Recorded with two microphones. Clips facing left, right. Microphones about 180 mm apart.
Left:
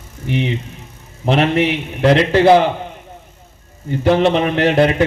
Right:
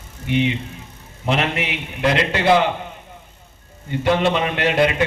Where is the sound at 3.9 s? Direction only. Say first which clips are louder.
Left 5 dB; 40° left (ahead or behind).